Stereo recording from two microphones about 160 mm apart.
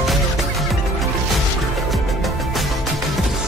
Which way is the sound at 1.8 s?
Centre (ahead or behind).